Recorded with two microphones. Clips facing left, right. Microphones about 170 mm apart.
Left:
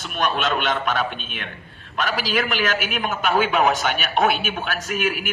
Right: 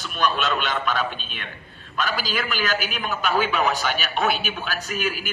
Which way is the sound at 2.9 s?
55° left (ahead or behind).